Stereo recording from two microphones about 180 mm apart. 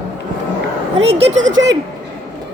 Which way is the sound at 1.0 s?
35° right (ahead or behind).